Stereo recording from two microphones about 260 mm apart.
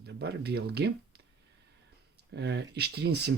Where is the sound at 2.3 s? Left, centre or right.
Right.